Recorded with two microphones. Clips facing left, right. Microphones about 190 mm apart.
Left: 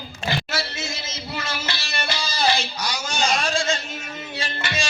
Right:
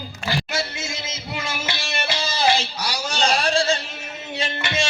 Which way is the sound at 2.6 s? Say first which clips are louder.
Right 1 dB; 35° right (ahead or behind).